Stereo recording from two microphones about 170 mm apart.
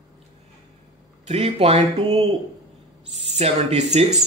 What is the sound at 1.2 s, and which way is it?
Speech, 35° right (ahead or behind).